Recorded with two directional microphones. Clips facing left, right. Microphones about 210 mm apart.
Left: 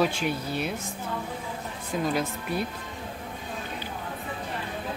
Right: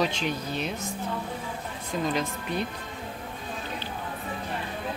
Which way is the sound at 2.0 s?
5° left (ahead or behind).